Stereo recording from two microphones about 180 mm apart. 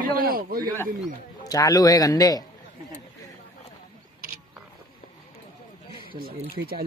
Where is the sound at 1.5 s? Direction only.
20° left (ahead or behind).